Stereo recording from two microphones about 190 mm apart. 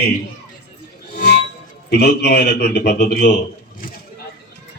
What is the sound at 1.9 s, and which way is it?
A man's voice, 55° left (ahead or behind).